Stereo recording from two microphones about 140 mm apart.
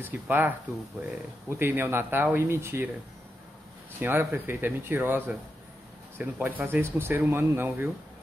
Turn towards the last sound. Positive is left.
turn(degrees=-15)  # may be behind; listen again after turning